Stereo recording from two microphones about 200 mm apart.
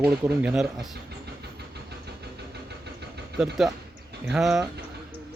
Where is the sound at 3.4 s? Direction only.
Centre (ahead or behind).